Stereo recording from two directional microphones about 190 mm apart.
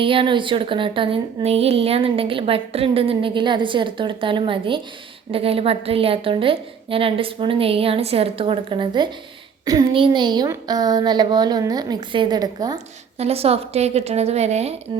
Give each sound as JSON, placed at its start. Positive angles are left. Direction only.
{"t": 0.0, "sound": "speech", "side_deg": -25}
{"t": 13.1, "sound": "a woman's voice", "side_deg": -30}